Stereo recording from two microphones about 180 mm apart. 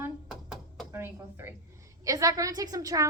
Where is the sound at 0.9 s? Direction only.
15° right (ahead or behind).